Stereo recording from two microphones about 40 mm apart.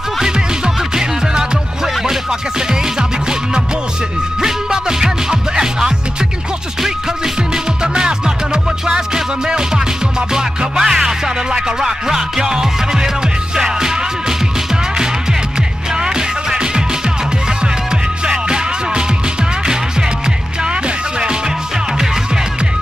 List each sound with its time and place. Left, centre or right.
0.9 s music: centre
2.7 s music: centre
7.5 s music: centre
15.9 s music: centre
18.2 s music: right